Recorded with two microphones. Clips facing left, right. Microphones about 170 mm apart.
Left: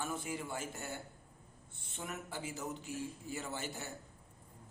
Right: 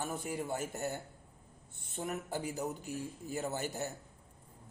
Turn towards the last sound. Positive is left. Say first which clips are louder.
# right 6 dB
turn(degrees=-40)  # may be behind; listen again after turning